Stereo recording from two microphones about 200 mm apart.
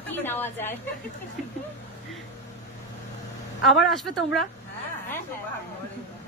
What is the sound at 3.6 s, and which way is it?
Speech, centre (ahead or behind).